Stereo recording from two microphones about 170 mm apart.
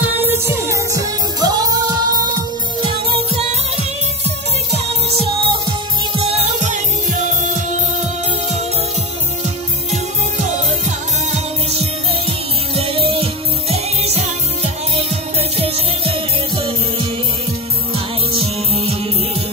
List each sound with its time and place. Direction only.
0.5 s music: 15° right (ahead or behind); by 7.2 s 45° right (ahead or behind)
11.3 s music: 35° right (ahead or behind)